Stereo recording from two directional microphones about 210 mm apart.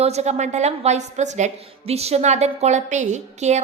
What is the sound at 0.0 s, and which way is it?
A woman's voice, 30° right (ahead or behind).